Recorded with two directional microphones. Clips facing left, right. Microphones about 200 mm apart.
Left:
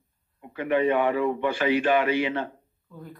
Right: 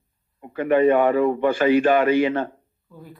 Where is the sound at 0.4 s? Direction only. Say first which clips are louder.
Right 6 dB; 45° right (ahead or behind).